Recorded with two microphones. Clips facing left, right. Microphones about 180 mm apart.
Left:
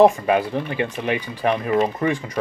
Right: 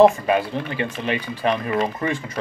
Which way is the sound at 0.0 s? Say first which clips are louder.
Even; 15° left (ahead or behind).